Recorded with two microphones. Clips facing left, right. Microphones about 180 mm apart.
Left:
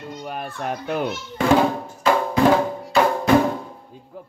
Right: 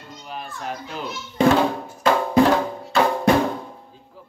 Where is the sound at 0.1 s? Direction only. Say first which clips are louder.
Left 2 dB; 55° left (ahead or behind).